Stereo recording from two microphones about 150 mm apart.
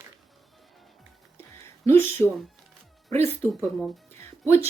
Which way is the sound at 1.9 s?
15° left (ahead or behind).